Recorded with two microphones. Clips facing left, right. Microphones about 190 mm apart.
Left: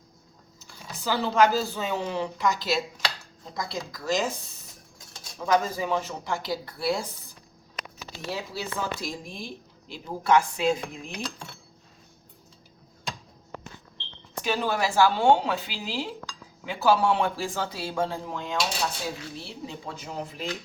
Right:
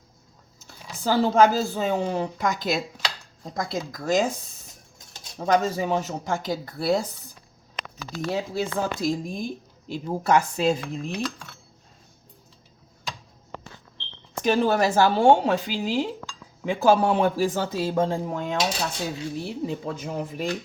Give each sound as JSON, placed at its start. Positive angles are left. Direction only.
{"t": 0.6, "sound": "speech", "side_deg": -45}
{"t": 5.4, "sound": "speech", "side_deg": -25}
{"t": 6.0, "sound": "speech", "side_deg": -45}
{"t": 8.0, "sound": "speech", "side_deg": -45}
{"t": 14.4, "sound": "speech", "side_deg": -45}